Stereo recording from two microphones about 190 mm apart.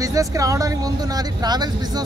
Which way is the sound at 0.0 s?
15° right (ahead or behind).